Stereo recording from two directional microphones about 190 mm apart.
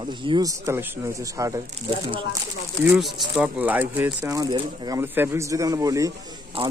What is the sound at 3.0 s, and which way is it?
Speech, centre (ahead or behind).